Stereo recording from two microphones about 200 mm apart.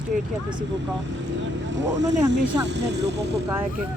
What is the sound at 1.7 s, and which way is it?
Speech, 65° right (ahead or behind).